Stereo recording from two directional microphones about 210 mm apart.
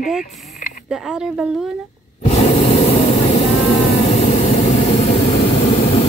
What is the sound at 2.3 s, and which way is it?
Vehicle, 30° left (ahead or behind).